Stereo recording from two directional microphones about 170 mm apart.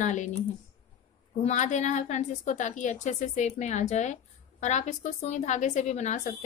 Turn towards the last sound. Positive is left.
turn(degrees=45)  # may be behind; listen again after turning